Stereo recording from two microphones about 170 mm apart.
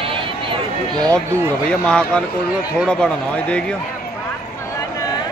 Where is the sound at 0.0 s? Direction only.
30° right (ahead or behind).